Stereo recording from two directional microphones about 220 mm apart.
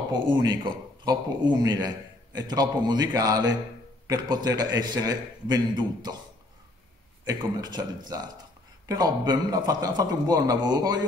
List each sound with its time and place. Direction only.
0.1 s a man's voice: 20° right (ahead or behind)
7.2 s a man's voice: 20° right (ahead or behind)